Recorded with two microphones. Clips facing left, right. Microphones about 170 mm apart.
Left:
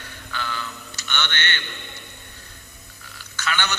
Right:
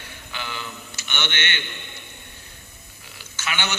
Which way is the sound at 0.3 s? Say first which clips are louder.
Left 3 dB; 15° right (ahead or behind).